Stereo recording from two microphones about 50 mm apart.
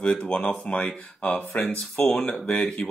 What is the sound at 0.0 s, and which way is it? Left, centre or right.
Speech, left.